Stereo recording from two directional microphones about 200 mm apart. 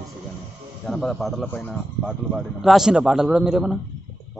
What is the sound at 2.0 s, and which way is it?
A man's voice, 5° right (ahead or behind).